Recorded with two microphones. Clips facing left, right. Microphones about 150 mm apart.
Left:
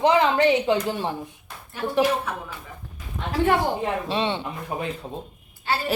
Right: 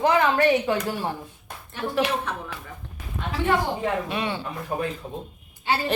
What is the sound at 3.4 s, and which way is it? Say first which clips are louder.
Speech: left 4 dB; 50° left (ahead or behind).